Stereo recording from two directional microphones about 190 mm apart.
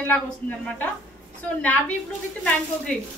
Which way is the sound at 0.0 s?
10° left (ahead or behind).